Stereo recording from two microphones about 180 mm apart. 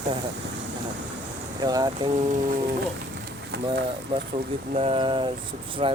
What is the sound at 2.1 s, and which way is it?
Speech, 40° right (ahead or behind).